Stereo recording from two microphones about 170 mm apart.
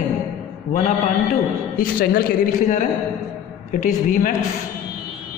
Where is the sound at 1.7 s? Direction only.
55° left (ahead or behind).